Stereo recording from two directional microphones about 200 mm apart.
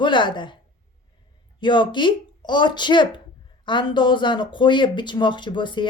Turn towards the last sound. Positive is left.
turn(degrees=25)  # may be behind; listen again after turning